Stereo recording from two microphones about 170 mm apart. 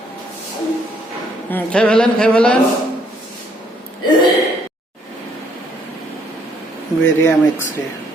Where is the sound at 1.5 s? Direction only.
5° left (ahead or behind).